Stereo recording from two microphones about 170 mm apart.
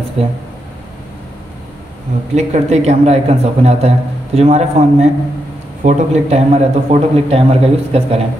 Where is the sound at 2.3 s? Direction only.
40° right (ahead or behind).